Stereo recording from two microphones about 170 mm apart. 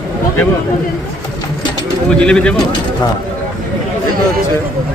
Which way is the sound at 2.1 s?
5° left (ahead or behind).